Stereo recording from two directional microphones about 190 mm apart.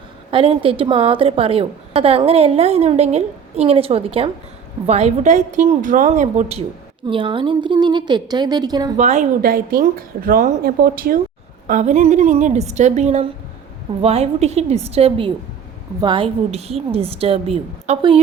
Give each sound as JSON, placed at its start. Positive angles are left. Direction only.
{"t": 0.3, "sound": "a woman's voice", "side_deg": -30}
{"t": 9.0, "sound": "a woman's voice", "side_deg": -40}
{"t": 11.7, "sound": "a woman's voice", "side_deg": -40}